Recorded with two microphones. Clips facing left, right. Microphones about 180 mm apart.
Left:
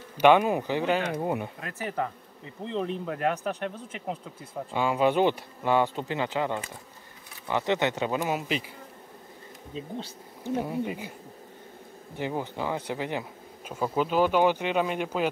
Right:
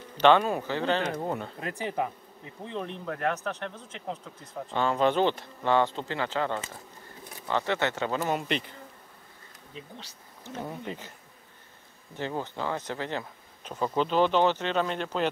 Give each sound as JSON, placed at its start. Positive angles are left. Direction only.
{"t": 0.2, "sound": "speech", "side_deg": 15}
{"t": 1.6, "sound": "speech", "side_deg": -20}
{"t": 2.8, "sound": "speech", "side_deg": 10}
{"t": 10.4, "sound": "speech", "side_deg": 10}
{"t": 12.2, "sound": "speech", "side_deg": 15}